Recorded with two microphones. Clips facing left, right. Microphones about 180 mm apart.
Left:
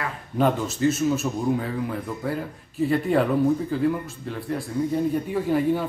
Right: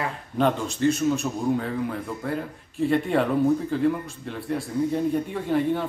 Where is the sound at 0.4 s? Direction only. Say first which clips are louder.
Left 1 dB; 5° left (ahead or behind).